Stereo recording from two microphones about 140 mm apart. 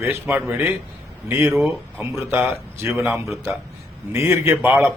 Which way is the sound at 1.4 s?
Centre (ahead or behind).